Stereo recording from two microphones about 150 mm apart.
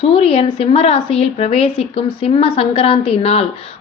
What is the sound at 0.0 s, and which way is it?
A woman's voice, 40° left (ahead or behind).